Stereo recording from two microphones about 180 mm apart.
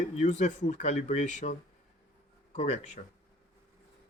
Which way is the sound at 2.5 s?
40° left (ahead or behind).